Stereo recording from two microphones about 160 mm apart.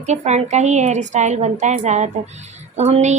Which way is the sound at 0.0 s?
45° right (ahead or behind).